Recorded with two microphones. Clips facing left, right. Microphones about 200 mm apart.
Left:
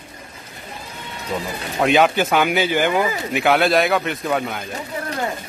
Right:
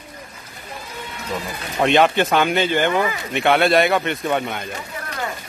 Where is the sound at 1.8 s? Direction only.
Centre (ahead or behind).